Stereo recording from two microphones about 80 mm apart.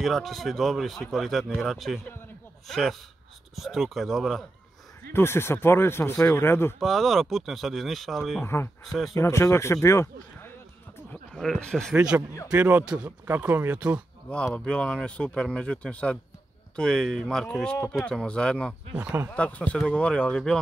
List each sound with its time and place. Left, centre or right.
0.0 s speech: centre
5.1 s speech: left
6.8 s speech: centre
9.1 s speech: left
11.4 s speech: centre
11.9 s speech: centre
13.3 s speech: right
14.3 s speech: centre